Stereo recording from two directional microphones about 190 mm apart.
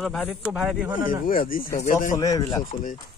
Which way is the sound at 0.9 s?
45° left (ahead or behind).